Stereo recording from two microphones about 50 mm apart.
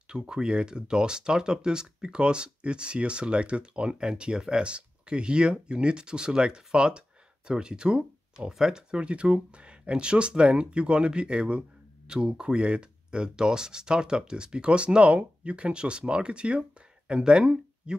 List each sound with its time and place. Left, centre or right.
0.1 s speech: centre